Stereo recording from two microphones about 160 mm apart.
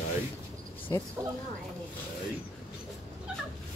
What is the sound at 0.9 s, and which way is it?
Speech, 20° left (ahead or behind).